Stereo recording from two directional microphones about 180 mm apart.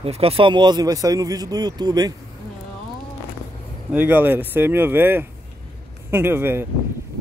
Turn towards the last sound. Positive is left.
turn(degrees=-10)  # may be behind; listen again after turning